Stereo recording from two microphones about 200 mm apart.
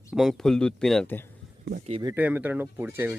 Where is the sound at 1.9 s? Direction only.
25° right (ahead or behind).